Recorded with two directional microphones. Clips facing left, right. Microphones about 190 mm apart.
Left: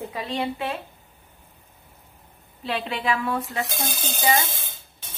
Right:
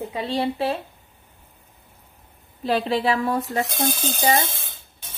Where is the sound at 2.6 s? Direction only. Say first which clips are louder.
Right 7 dB; 40° right (ahead or behind).